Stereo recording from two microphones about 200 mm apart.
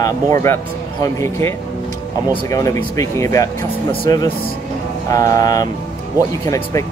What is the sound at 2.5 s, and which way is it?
Speech, 15° left (ahead or behind).